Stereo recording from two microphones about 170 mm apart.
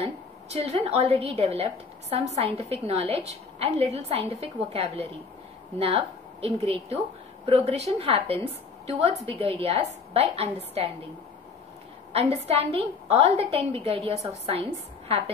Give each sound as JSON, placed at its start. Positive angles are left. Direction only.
{"t": 0.0, "sound": "a woman's voice", "side_deg": -35}
{"t": 12.1, "sound": "a woman's voice", "side_deg": -40}